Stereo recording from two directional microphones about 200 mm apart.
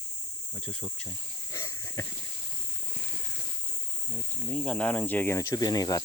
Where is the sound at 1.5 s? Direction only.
15° left (ahead or behind).